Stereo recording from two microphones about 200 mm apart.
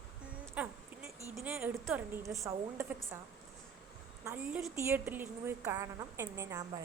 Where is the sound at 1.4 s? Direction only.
10° right (ahead or behind).